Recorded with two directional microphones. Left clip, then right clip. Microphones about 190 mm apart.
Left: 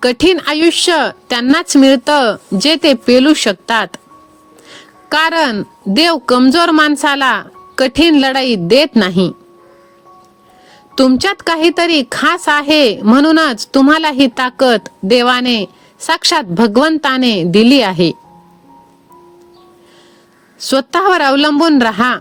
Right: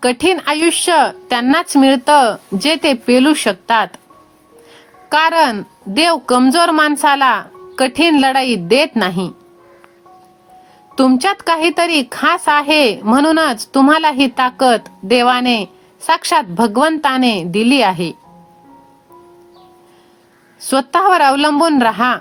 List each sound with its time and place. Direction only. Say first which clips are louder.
0.0 s speech: left 3 dB; 45° left (ahead or behind)
10.9 s speech: left 2 dB; 45° left (ahead or behind)
20.6 s speech: left 1 dB; 45° left (ahead or behind)